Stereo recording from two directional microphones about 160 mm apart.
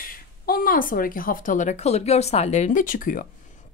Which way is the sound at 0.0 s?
65° left (ahead or behind).